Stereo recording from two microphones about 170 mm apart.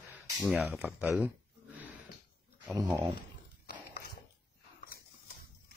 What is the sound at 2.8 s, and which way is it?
Speech, 25° right (ahead or behind).